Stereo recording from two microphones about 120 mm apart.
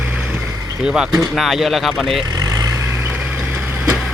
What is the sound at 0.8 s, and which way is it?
Speech, 5° right (ahead or behind).